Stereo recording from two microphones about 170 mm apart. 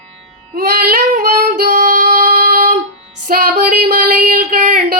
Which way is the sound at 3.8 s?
50° right (ahead or behind).